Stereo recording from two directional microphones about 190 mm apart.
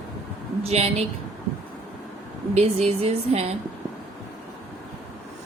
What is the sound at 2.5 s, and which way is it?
A woman's voice, 35° right (ahead or behind).